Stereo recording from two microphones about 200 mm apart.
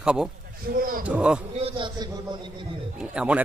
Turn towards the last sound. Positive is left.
turn(degrees=-5)  # may be behind; listen again after turning